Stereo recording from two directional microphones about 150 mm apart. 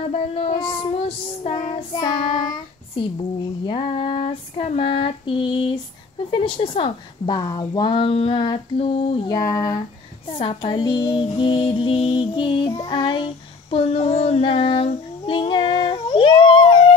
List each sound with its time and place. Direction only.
0.1 s child singing: 40° left (ahead or behind)
9.3 s a sound: 25° left (ahead or behind)
10.3 s child singing: 35° left (ahead or behind)